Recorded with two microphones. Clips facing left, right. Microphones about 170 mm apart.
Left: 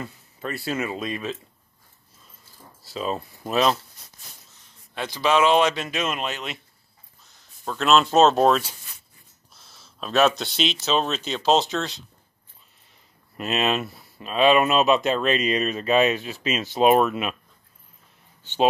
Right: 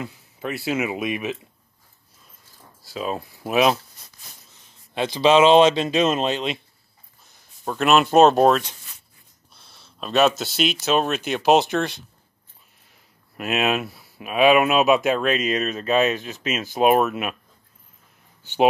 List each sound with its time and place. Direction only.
0.0 s speech: 10° right (ahead or behind)
2.9 s speech: 5° right (ahead or behind)
4.9 s speech: 25° right (ahead or behind)
7.6 s speech: 10° right (ahead or behind)
8.5 s speech: centre (ahead or behind)
9.6 s a sound: centre (ahead or behind)
9.9 s speech: centre (ahead or behind)
13.4 s speech: 5° right (ahead or behind)
18.4 s speech: 10° right (ahead or behind)